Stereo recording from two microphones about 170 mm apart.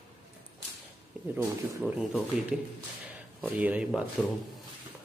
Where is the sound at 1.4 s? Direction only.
10° right (ahead or behind).